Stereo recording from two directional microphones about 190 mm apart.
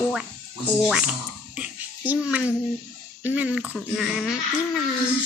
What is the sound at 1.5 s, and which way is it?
Music, 5° right (ahead or behind).